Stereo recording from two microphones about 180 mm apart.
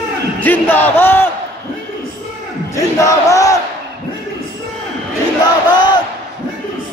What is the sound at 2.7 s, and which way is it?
Chant, 15° left (ahead or behind).